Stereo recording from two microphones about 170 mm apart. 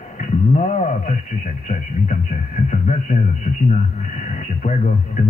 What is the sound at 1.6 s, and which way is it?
A man's voice, 45° left (ahead or behind).